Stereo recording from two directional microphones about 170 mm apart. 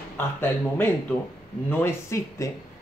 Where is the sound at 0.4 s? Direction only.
10° left (ahead or behind).